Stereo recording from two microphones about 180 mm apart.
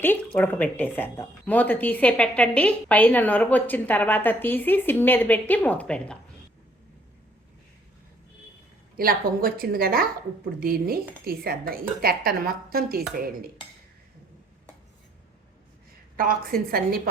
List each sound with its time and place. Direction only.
0.0 s speech: 10° left (ahead or behind)
9.0 s a woman's voice: 55° right (ahead or behind)
16.1 s a woman's voice: 55° right (ahead or behind)